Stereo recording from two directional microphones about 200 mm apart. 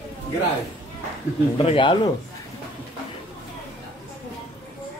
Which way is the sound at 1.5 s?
25° left (ahead or behind).